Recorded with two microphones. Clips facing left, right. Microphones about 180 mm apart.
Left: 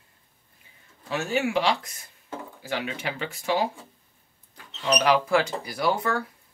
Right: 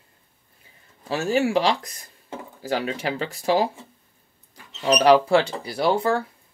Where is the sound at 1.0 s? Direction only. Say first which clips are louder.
Right 4 dB; 35° right (ahead or behind).